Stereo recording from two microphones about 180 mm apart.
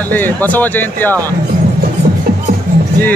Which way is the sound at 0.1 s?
10° left (ahead or behind).